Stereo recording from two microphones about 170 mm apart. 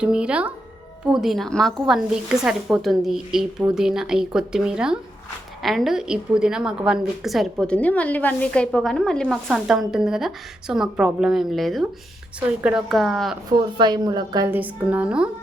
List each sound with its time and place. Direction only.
0.0 s a woman's voice: 5° right (ahead or behind)
13.6 s a woman's voice: 25° right (ahead or behind); by 15.3 s 5° right (ahead or behind)